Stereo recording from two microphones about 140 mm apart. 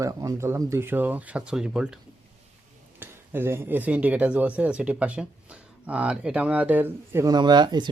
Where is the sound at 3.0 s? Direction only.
15° right (ahead or behind).